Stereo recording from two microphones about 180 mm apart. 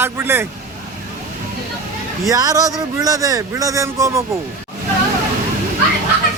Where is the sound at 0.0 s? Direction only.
10° right (ahead or behind).